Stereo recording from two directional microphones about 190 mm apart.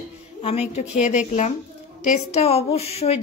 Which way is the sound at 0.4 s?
35° left (ahead or behind).